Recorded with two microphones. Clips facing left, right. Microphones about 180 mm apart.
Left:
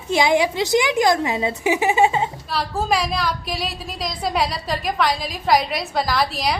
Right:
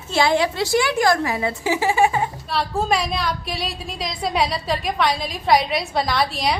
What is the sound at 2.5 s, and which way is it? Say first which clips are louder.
A woman's voice: right 1 dB; centre (ahead or behind).